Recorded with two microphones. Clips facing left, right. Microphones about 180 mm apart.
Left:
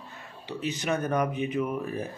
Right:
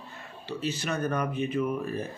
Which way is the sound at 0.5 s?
15° left (ahead or behind).